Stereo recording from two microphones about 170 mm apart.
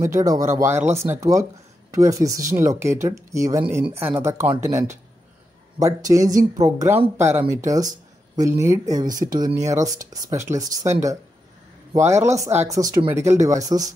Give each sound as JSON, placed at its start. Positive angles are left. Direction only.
{"t": 0.0, "sound": "speech", "side_deg": -20}